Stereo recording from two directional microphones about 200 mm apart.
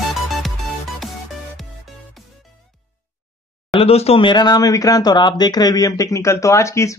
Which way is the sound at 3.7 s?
30° left (ahead or behind).